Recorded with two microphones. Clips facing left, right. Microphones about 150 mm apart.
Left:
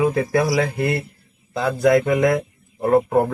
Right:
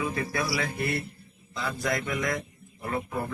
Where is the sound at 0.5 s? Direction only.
90° left.